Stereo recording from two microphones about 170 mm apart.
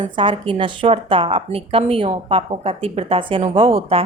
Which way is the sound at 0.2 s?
30° right (ahead or behind).